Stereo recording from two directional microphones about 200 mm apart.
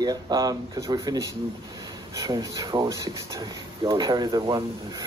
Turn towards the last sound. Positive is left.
turn(degrees=-20)  # may be behind; listen again after turning